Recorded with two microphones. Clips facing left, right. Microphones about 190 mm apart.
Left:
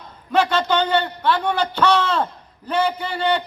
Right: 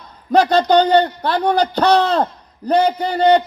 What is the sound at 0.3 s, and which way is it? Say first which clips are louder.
A man's voice: right 6 dB; 40° right (ahead or behind).